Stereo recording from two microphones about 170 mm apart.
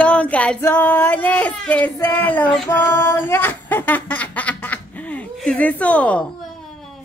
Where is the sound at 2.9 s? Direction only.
15° left (ahead or behind).